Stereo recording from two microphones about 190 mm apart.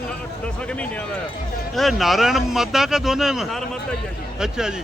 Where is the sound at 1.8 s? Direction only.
Centre (ahead or behind).